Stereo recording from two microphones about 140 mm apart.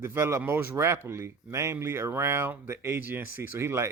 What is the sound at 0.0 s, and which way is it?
Speech, 20° right (ahead or behind).